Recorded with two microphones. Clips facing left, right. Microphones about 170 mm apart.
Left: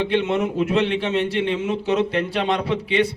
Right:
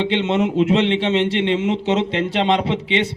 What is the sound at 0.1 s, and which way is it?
A man's voice, 20° right (ahead or behind).